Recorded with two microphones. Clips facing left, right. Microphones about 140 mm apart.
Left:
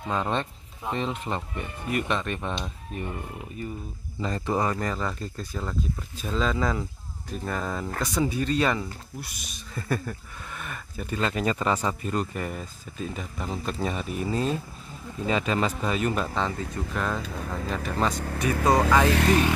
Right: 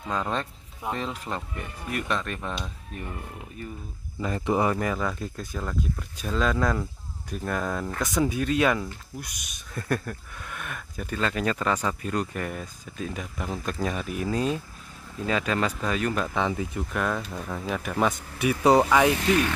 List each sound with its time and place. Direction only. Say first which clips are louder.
0.1 s speech: left 1 dB; centre (ahead or behind)
4.2 s speech: right 2 dB; 10° right (ahead or behind)
16.3 s speech: right 2 dB; 15° right (ahead or behind)
16.7 s speech: right 1 dB; 5° right (ahead or behind)
18.1 s speech: left 11 dB; 60° left (ahead or behind)
18.4 s speech: right 3 dB; 10° right (ahead or behind)